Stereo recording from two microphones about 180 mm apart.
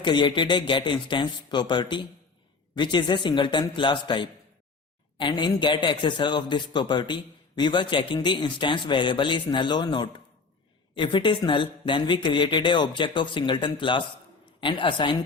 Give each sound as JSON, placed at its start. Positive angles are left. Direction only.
{"t": 0.0, "sound": "a man's voice", "side_deg": 25}